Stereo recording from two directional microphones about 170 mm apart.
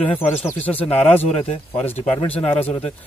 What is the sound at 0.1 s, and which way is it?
Speech, 35° left (ahead or behind).